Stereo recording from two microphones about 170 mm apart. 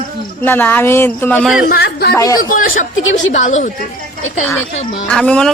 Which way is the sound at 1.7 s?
70° left (ahead or behind).